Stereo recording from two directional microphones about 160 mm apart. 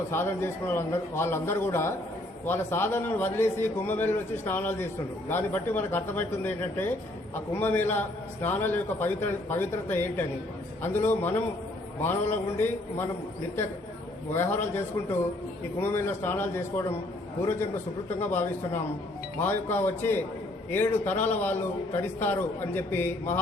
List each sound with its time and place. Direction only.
0.1 s a man's voice: 15° left (ahead or behind)
14.3 s a man's voice: 15° left (ahead or behind)
15.8 s a man's voice: 15° left (ahead or behind)
18.2 s a man's voice: 15° left (ahead or behind)